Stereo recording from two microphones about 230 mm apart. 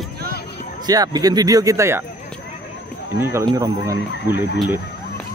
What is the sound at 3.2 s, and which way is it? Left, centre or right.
Speech, centre.